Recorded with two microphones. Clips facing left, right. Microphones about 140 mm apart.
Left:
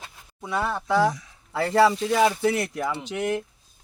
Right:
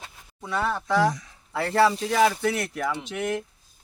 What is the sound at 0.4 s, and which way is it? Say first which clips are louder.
Speech: even; 20° left (ahead or behind).